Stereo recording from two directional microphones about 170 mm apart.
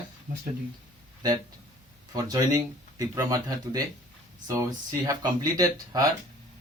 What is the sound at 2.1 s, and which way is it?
Speech, 20° right (ahead or behind).